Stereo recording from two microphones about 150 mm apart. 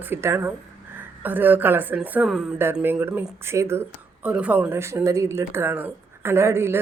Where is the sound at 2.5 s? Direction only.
15° right (ahead or behind).